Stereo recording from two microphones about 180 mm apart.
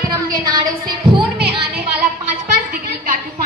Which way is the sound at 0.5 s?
25° right (ahead or behind).